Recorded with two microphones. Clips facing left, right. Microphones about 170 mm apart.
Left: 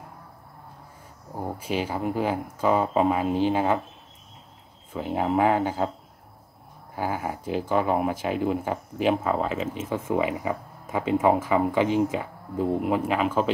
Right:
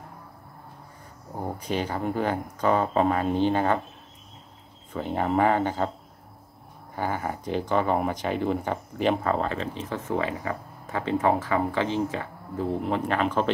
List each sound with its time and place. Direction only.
1.3 s speech: 5° left (ahead or behind)
4.9 s speech: 5° left (ahead or behind)
7.0 s speech: 5° left (ahead or behind)